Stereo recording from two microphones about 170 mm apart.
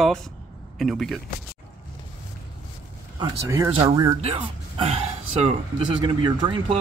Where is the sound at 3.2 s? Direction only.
15° right (ahead or behind).